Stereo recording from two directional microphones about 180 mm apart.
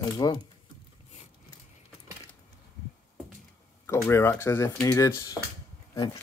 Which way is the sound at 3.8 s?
15° left (ahead or behind).